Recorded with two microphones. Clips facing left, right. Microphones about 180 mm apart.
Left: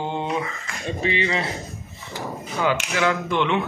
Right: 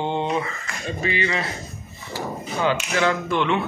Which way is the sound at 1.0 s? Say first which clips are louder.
Left 1 dB; 25° left (ahead or behind).